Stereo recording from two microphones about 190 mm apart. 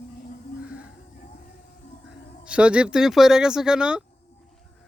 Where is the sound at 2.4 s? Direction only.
5° right (ahead or behind).